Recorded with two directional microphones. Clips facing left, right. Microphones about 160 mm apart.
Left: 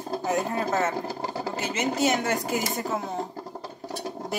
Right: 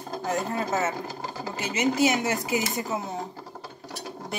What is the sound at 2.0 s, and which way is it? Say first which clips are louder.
Speech: left 1 dB; 10° right (ahead or behind).